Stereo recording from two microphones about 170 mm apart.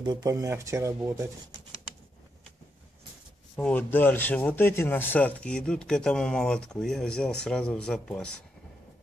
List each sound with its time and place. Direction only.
0.0 s speech: 25° right (ahead or behind)
3.5 s speech: 10° left (ahead or behind)